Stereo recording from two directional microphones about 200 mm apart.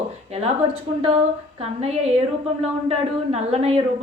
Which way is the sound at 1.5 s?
30° right (ahead or behind).